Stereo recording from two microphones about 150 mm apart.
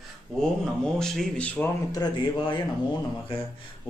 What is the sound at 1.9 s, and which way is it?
Speech, 30° left (ahead or behind).